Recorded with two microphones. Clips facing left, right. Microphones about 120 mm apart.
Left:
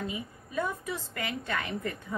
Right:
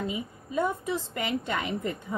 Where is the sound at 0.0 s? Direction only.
20° right (ahead or behind).